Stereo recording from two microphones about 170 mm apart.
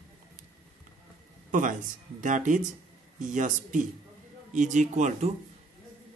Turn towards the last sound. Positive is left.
turn(degrees=-45)  # may be behind; listen again after turning